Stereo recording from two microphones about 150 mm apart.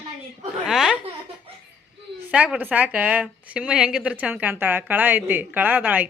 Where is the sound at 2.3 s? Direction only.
10° right (ahead or behind).